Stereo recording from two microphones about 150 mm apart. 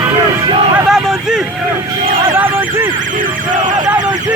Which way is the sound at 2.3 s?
15° right (ahead or behind).